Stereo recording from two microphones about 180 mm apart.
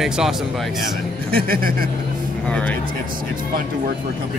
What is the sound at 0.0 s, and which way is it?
Speech, 5° right (ahead or behind).